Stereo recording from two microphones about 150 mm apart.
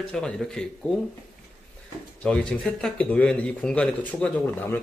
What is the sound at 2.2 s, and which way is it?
Speech, 5° left (ahead or behind).